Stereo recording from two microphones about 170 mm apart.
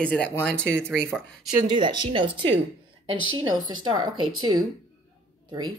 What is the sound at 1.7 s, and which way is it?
Speech, 30° right (ahead or behind).